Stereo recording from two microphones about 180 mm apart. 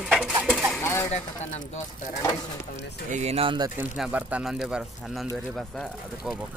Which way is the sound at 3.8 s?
10° right (ahead or behind).